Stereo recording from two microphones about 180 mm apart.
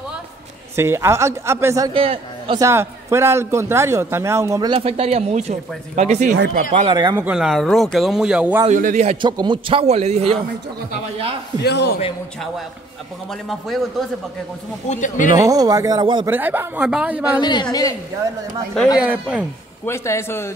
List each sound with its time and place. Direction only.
0.7 s a man's voice: 15° right (ahead or behind)
2.0 s a man's voice: 30° right (ahead or behind)
2.6 s a man's voice: 15° right (ahead or behind); by 6.3 s 40° right (ahead or behind)
6.7 s speech: 30° right (ahead or behind)
7.2 s speech: 5° right (ahead or behind)
8.6 s a man's voice: 45° right (ahead or behind)
11.6 s a man's voice: 65° left (ahead or behind)
13.3 s speech: centre (ahead or behind)
14.9 s speech: 45° left (ahead or behind)
15.3 s speech: 20° right (ahead or behind)
16.3 s a man's voice: 10° right (ahead or behind)
17.4 s a woman's voice: 25° left (ahead or behind)
18.9 s speech: 5° right (ahead or behind)
19.9 s a man's voice: 15° left (ahead or behind)